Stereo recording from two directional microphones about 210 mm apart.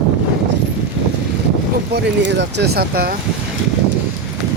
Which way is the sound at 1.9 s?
55° right (ahead or behind).